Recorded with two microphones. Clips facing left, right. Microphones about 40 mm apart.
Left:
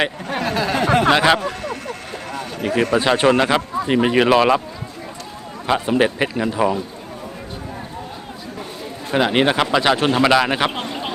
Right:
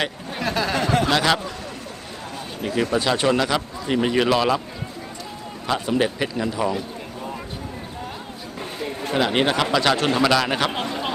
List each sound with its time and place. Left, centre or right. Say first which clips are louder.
0.4 s a sound: left 1 dB; centre
0.9 s a sound: left 8 dB; left
1.1 s a man's voice: left 4 dB; left
1.5 s vehicle: left 7 dB; left
2.6 s a man's voice: left 4 dB; left
5.6 s a man's voice: left 4 dB; left
9.1 s a man's voice: left 4 dB; centre